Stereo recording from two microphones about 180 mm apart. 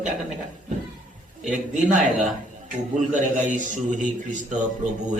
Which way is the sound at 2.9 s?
45° right (ahead or behind).